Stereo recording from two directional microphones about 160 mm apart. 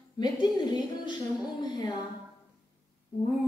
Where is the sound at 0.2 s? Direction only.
25° left (ahead or behind).